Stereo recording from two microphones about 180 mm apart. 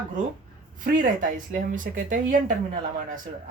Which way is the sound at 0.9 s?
50° right (ahead or behind).